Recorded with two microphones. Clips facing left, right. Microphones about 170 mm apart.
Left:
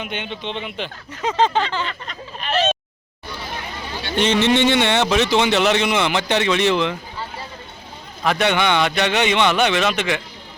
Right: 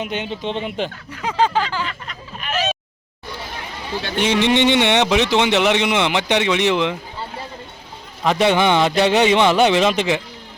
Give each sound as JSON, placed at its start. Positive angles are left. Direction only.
{"t": 0.0, "sound": "speech", "side_deg": -35}
{"t": 1.2, "sound": "speech", "side_deg": -10}
{"t": 1.8, "sound": "a sound", "side_deg": 35}
{"t": 4.1, "sound": "speech", "side_deg": -10}
{"t": 8.2, "sound": "speech", "side_deg": -25}